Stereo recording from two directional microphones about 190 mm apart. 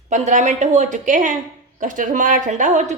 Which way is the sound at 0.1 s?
40° right (ahead or behind).